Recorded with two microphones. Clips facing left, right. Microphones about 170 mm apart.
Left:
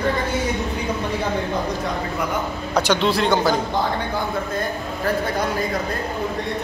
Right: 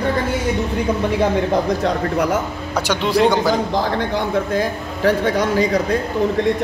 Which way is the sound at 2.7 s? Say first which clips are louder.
Right 2 dB; 10° right (ahead or behind).